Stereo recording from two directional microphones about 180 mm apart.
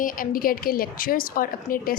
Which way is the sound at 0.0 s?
50° left (ahead or behind).